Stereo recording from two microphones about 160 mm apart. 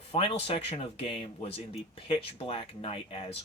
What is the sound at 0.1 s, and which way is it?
Speech, 35° left (ahead or behind).